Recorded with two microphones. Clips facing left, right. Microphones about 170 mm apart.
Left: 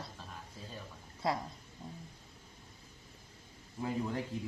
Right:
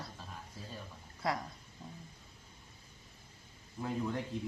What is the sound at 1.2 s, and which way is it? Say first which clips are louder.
Speech: left 1 dB; 25° left (ahead or behind).